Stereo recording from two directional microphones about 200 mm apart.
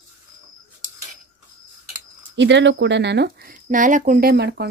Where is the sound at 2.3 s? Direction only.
60° right (ahead or behind).